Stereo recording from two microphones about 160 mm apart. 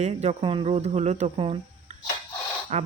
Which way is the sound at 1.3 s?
35° right (ahead or behind).